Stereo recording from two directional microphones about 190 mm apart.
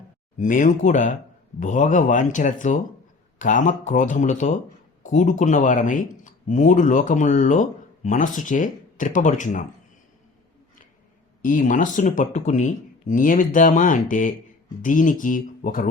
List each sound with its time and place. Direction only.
0.3 s speech: 45° left (ahead or behind)
11.4 s speech: 45° left (ahead or behind)